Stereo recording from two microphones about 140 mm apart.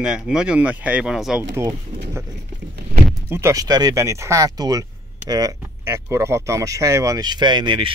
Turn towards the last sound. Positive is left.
turn(degrees=-35)  # may be behind; listen again after turning